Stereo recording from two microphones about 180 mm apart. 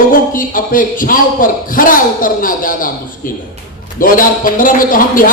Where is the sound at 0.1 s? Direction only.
50° left (ahead or behind).